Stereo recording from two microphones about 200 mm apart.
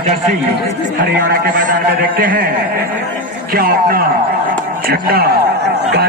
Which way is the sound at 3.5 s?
50° right (ahead or behind).